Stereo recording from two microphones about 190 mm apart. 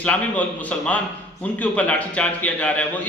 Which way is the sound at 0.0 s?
5° left (ahead or behind).